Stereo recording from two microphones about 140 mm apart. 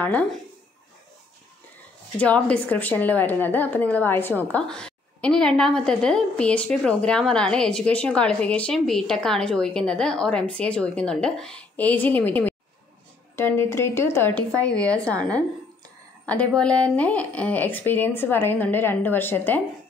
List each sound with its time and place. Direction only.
0.0 s a woman's voice: 10° left (ahead or behind)
2.1 s a woman's voice: 10° left (ahead or behind)